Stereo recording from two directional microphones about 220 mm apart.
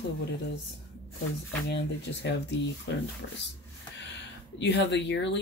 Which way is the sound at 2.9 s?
50° left (ahead or behind).